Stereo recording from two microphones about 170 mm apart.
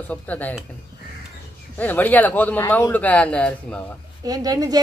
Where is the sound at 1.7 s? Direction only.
10° left (ahead or behind).